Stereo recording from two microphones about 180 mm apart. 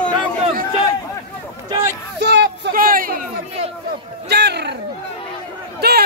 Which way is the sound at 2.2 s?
70° right (ahead or behind).